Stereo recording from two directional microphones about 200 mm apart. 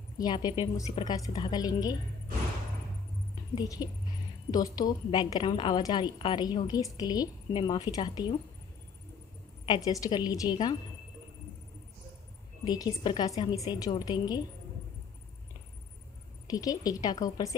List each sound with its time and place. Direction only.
0.2 s a woman's voice: 20° left (ahead or behind)
3.5 s a woman's voice: 20° left (ahead or behind)
9.7 s a woman's voice: 20° left (ahead or behind)
12.6 s a woman's voice: 20° left (ahead or behind)
16.4 s a woman's voice: 20° left (ahead or behind)